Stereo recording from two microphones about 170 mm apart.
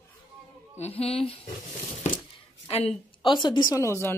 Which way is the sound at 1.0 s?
35° left (ahead or behind).